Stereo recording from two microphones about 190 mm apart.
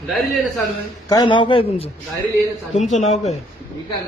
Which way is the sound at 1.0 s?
20° left (ahead or behind).